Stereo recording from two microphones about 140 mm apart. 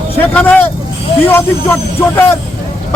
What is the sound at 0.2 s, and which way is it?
A man's voice, 10° left (ahead or behind).